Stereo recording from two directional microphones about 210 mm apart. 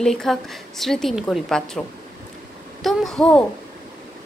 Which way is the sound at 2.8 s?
Centre (ahead or behind).